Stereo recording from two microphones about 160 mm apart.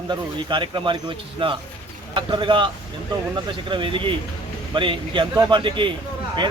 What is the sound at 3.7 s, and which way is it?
A man's voice, 30° right (ahead or behind).